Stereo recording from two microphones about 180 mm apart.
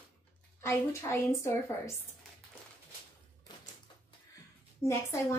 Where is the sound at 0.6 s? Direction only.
15° left (ahead or behind).